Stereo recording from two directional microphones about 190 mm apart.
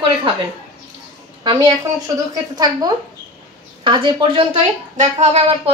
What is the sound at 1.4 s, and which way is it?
A woman's voice, 25° right (ahead or behind).